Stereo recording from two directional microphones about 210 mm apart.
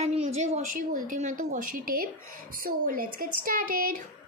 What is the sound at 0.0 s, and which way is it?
A woman's voice, 30° right (ahead or behind).